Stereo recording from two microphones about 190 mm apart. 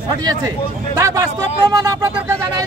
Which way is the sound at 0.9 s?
15° right (ahead or behind).